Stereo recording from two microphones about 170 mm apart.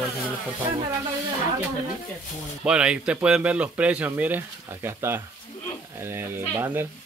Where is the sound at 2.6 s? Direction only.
5° right (ahead or behind).